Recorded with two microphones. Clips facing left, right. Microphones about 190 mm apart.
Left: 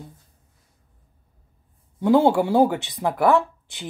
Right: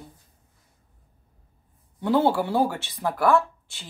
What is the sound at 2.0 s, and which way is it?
Speech, 10° left (ahead or behind).